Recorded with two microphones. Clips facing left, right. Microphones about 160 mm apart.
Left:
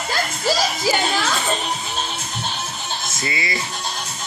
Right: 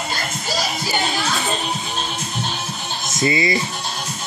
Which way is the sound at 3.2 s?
25° right (ahead or behind).